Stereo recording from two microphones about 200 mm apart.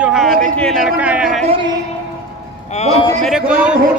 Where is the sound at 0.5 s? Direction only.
Centre (ahead or behind).